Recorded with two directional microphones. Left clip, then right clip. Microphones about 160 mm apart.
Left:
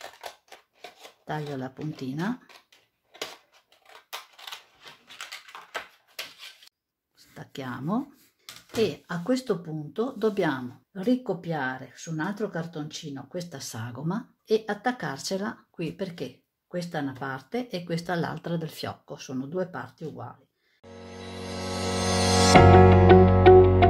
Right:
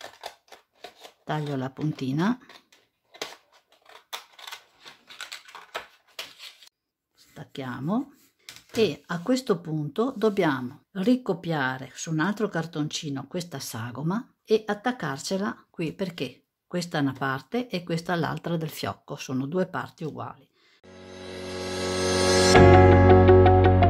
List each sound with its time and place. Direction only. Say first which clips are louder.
0.0 s scissors: right 1 dB; 5° right (ahead or behind)
1.2 s speech: right 3 dB; 35° right (ahead or behind)
5.0 s a sound: right 1 dB; 10° right (ahead or behind)
7.2 s a sound: right 1 dB; 20° right (ahead or behind)
8.7 s speech: right 2 dB; 30° right (ahead or behind)
9.6 s speech: right 3 dB; 45° right (ahead or behind)
20.9 s music: right 1 dB; centre (ahead or behind)